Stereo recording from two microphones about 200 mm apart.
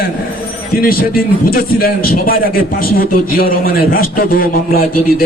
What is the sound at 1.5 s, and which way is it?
A man's voice, 45° left (ahead or behind).